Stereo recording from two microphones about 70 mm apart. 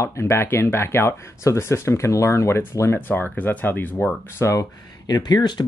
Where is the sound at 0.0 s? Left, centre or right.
Left.